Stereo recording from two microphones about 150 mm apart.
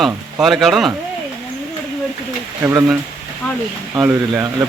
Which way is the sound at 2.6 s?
15° right (ahead or behind).